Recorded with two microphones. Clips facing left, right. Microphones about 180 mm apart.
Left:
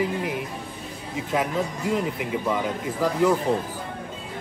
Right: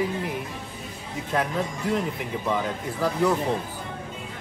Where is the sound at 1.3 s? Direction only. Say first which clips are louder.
Left 1 dB; 5° left (ahead or behind).